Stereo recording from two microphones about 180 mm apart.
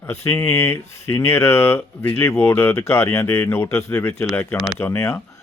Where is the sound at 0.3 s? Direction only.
15° left (ahead or behind).